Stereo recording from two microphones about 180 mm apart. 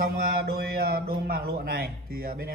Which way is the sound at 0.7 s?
60° right (ahead or behind).